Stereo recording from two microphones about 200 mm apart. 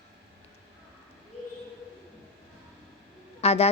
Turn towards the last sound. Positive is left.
turn(degrees=30)  # may be behind; listen again after turning